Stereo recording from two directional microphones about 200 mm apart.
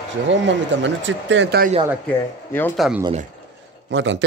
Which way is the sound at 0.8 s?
70° right (ahead or behind).